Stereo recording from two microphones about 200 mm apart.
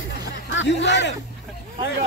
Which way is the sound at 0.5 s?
60° left (ahead or behind).